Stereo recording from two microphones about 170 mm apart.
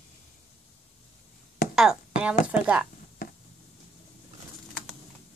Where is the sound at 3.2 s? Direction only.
55° left (ahead or behind).